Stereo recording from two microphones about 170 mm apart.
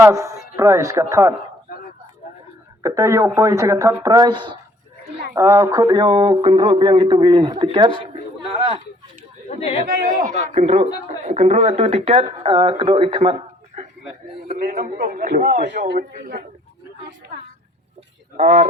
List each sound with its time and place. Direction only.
0.0 s a woman's voice: 15° right (ahead or behind)
2.8 s a man's voice: 20° right (ahead or behind); by 8.8 s 35° right (ahead or behind)
9.6 s a man's voice: 35° left (ahead or behind)
9.8 s a man's voice: 55° right (ahead or behind); by 13.3 s 35° right (ahead or behind)
14.4 s a man's voice: 50° right (ahead or behind)
15.9 s a man's voice: 65° right (ahead or behind)
18.3 s a man's voice: 45° right (ahead or behind)